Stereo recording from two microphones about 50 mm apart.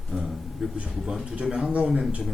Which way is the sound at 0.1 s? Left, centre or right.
Centre.